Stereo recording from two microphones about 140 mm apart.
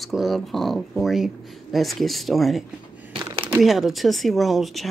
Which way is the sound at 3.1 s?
40° right (ahead or behind).